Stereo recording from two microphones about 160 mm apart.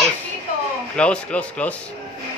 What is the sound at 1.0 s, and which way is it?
Speech, 5° left (ahead or behind).